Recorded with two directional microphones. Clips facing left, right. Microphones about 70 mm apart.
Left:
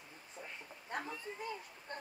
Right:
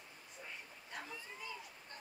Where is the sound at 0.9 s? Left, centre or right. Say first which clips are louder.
Left 6 dB; left.